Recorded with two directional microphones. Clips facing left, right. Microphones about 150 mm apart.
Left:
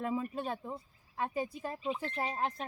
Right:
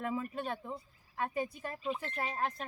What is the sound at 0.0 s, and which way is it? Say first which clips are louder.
Speech: left 2 dB; 20° left (ahead or behind).